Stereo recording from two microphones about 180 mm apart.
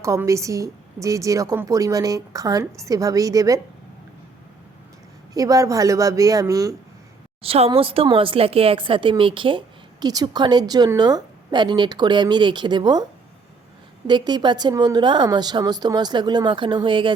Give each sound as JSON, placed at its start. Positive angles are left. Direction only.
{"t": 0.0, "sound": "a woman's voice", "side_deg": -15}
{"t": 5.3, "sound": "speech", "side_deg": -20}
{"t": 7.4, "sound": "speech", "side_deg": -30}
{"t": 14.1, "sound": "speech", "side_deg": -25}